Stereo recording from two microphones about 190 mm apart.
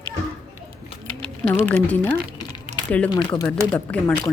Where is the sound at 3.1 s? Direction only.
20° left (ahead or behind).